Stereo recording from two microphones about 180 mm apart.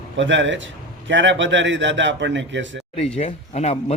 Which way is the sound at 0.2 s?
90° right.